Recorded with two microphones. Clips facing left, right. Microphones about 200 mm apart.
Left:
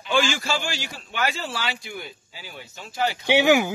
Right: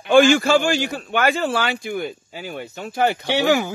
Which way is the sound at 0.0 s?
55° right (ahead or behind).